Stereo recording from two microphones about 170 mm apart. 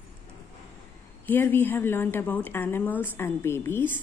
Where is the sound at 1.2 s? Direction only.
10° left (ahead or behind).